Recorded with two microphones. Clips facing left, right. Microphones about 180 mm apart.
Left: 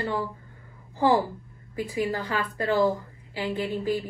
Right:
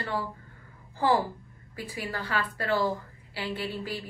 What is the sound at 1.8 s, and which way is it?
A woman's voice, 20° left (ahead or behind).